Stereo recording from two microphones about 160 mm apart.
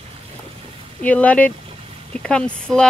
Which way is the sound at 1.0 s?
10° left (ahead or behind).